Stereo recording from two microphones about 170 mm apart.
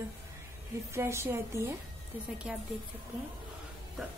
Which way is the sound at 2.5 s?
5° right (ahead or behind).